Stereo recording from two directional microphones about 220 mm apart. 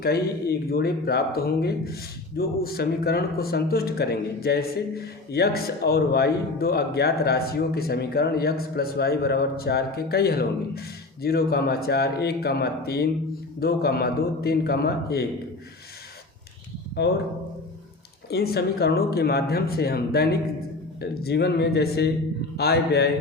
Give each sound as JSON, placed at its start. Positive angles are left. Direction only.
{"t": 0.0, "sound": "speech", "side_deg": 45}
{"t": 17.0, "sound": "speech", "side_deg": 50}
{"t": 18.3, "sound": "speech", "side_deg": 45}